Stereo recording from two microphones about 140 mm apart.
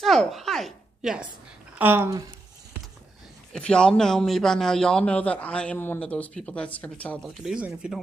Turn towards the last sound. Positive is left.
turn(degrees=-5)  # may be behind; listen again after turning